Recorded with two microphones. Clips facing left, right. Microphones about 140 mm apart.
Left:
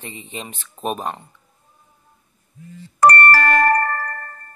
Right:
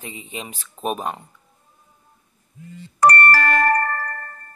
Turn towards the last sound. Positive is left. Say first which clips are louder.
# left 2 dB
turn(degrees=45)  # may be behind; listen again after turning